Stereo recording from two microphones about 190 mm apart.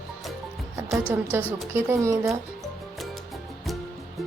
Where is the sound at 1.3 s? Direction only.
10° right (ahead or behind).